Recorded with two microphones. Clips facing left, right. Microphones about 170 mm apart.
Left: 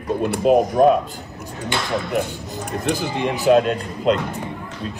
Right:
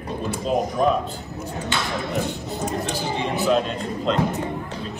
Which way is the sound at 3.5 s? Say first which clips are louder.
Left 6 dB; 55° left (ahead or behind).